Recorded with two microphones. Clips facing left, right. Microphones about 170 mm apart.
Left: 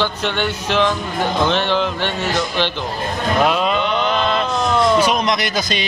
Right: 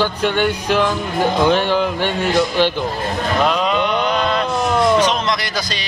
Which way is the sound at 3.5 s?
5° left (ahead or behind).